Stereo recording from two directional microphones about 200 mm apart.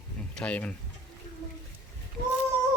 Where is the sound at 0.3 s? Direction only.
5° left (ahead or behind).